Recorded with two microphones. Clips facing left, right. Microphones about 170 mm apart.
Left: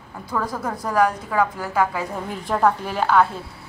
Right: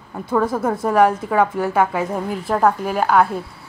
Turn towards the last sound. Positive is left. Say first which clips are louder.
# right 2 dB
turn(degrees=-10)  # may be behind; listen again after turning